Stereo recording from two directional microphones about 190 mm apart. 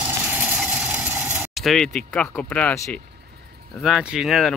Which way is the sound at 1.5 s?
Centre (ahead or behind).